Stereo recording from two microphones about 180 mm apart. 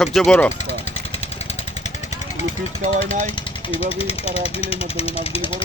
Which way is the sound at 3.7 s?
30° left (ahead or behind).